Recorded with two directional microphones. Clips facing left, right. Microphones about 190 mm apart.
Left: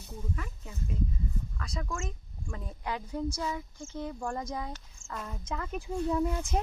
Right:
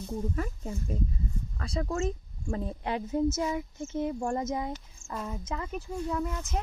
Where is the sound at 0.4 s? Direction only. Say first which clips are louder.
Right 7 dB; 40° right (ahead or behind); by 4.8 s 20° right (ahead or behind).